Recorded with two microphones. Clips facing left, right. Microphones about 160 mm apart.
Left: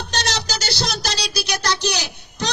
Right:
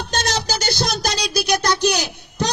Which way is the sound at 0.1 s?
50° right (ahead or behind).